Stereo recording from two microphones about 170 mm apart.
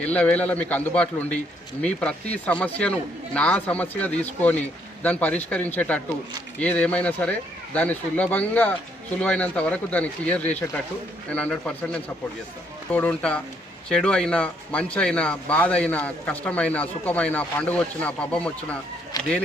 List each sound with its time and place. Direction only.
0.0 s speech: 5° left (ahead or behind)
12.9 s speech: 10° left (ahead or behind)
19.1 s speech: 20° left (ahead or behind)